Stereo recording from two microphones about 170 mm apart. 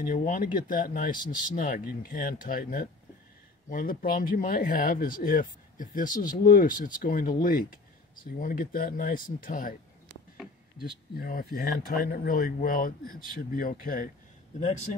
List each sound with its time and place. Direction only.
0.0 s speech: 50° left (ahead or behind)
10.8 s speech: 60° left (ahead or behind)